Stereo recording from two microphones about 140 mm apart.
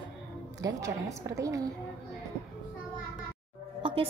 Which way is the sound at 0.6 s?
25° right (ahead or behind).